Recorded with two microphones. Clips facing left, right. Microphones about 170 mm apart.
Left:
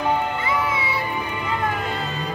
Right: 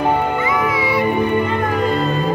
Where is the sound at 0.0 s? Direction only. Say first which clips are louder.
Right 5 dB; 55° right (ahead or behind).